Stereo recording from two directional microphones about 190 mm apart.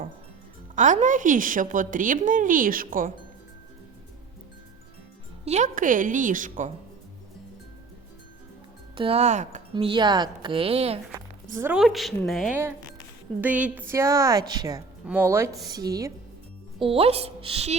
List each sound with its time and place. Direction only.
0.8 s a woman's voice: 40° right (ahead or behind)
5.5 s a woman's voice: 40° right (ahead or behind)
9.0 s a woman's voice: 30° right (ahead or behind)
9.7 s a woman's voice: 25° right (ahead or behind)
11.5 s a woman's voice: 10° right (ahead or behind)
15.0 s a woman's voice: 10° right (ahead or behind)
16.8 s a woman's voice: 30° right (ahead or behind)